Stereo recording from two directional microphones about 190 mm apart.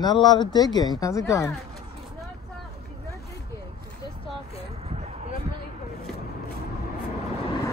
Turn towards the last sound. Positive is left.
turn(degrees=20)  # may be behind; listen again after turning